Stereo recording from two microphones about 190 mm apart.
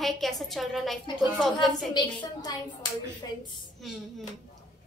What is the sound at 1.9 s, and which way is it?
Speech, 20° left (ahead or behind).